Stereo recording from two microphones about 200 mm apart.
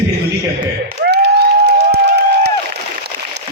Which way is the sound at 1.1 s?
55° right (ahead or behind).